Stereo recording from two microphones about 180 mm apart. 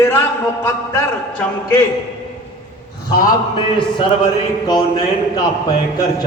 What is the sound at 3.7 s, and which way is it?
A man's voice, 25° left (ahead or behind).